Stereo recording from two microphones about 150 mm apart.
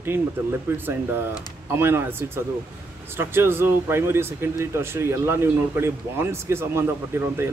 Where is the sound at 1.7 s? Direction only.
15° right (ahead or behind).